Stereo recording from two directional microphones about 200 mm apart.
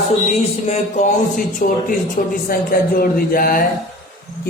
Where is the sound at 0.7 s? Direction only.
40° left (ahead or behind).